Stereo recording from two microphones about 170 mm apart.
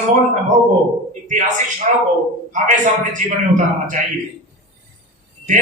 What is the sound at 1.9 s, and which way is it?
A man's voice, 45° right (ahead or behind).